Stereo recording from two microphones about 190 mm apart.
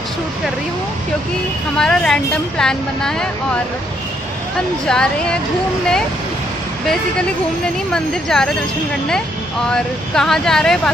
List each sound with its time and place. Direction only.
1.8 s a woman's voice: 5° left (ahead or behind)
4.8 s a woman's voice: 5° left (ahead or behind)
7.9 s a woman's voice: 5° left (ahead or behind)
9.7 s a woman's voice: 5° left (ahead or behind)